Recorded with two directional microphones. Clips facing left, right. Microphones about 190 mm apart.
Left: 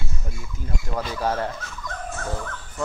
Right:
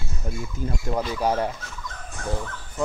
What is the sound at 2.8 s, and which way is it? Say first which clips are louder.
Speech: right 3 dB; 20° right (ahead or behind).